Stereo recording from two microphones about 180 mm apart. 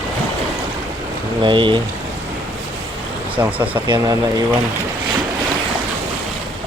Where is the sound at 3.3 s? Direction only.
10° right (ahead or behind).